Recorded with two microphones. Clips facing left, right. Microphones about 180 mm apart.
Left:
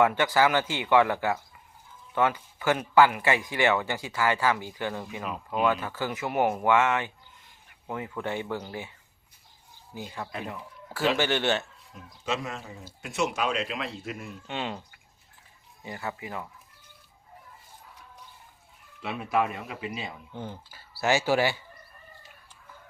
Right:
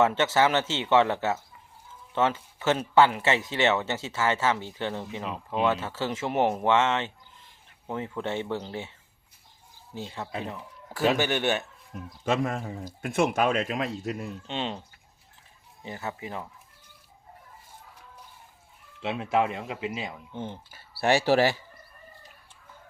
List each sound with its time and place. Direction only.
0.0 s speech: 25° right (ahead or behind)
9.9 s speech: 25° right (ahead or behind)
12.2 s speech: 50° right (ahead or behind)
14.4 s speech: 20° right (ahead or behind)
15.8 s speech: 20° right (ahead or behind)
19.0 s speech: 25° right (ahead or behind)